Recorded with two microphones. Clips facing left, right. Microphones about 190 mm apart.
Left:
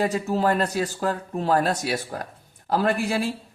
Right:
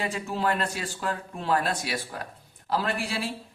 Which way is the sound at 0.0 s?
40° left (ahead or behind).